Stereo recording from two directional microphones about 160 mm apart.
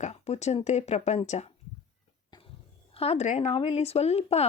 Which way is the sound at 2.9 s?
40° left (ahead or behind).